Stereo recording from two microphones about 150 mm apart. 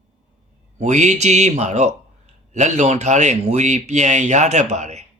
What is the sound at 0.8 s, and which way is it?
Speech, 50° right (ahead or behind).